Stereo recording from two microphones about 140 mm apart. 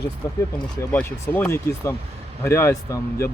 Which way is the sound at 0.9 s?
15° left (ahead or behind).